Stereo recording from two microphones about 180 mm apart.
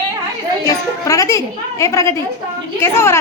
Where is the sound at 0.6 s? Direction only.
15° left (ahead or behind).